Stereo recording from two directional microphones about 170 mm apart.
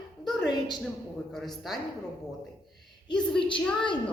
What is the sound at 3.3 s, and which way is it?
Speech, 30° left (ahead or behind).